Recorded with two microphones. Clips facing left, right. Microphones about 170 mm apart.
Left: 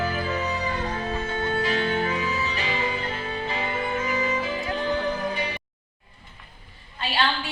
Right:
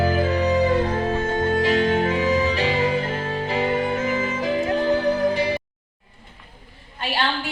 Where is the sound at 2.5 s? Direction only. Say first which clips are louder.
Right 7 dB; 90° right.